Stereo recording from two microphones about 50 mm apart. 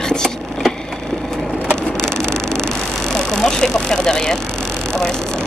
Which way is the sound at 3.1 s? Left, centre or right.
Centre.